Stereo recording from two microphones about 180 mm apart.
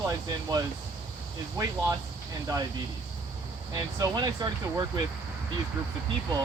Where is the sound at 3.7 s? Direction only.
20° right (ahead or behind).